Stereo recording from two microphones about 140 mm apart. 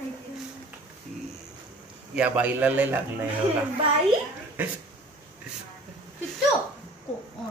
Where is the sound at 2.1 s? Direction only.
10° right (ahead or behind).